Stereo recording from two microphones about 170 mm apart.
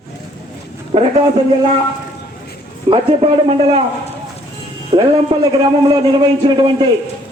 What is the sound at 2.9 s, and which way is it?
Speech, 30° right (ahead or behind).